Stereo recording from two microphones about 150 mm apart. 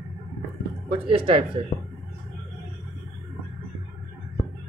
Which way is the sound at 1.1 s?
35° right (ahead or behind).